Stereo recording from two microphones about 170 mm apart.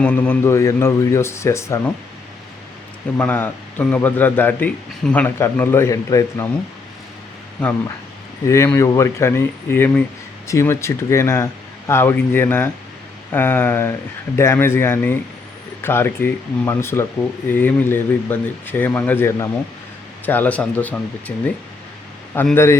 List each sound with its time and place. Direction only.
0.0 s a man's voice: 10° left (ahead or behind)
3.2 s a man's voice: 10° left (ahead or behind)
7.6 s a man's voice: 10° left (ahead or behind)